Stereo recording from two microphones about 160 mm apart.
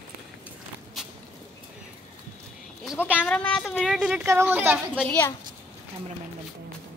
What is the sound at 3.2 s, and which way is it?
Speech, 5° left (ahead or behind).